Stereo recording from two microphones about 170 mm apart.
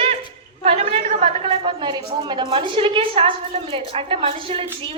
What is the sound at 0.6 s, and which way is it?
A woman's voice, 35° right (ahead or behind).